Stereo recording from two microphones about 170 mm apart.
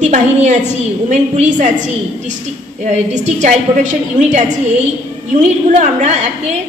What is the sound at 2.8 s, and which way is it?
A woman's voice, 40° right (ahead or behind).